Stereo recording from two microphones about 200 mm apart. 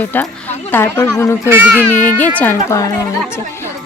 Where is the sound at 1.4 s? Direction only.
10° right (ahead or behind).